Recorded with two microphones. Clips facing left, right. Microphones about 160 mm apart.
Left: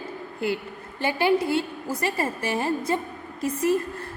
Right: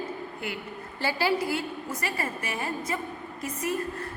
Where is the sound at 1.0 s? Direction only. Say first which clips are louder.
Left 5 dB; 20° left (ahead or behind).